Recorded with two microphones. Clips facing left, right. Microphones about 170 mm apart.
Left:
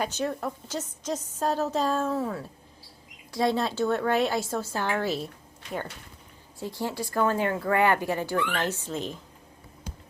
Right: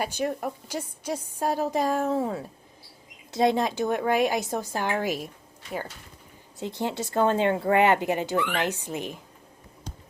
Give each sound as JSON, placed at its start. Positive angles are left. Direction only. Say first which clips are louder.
{"t": 0.0, "sound": "a woman's voice", "louder": "right 1 dB", "side_deg": -10}
{"t": 6.6, "sound": "speech", "louder": "right 2 dB", "side_deg": -20}